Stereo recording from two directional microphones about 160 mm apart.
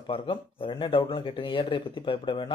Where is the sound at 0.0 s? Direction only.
35° left (ahead or behind).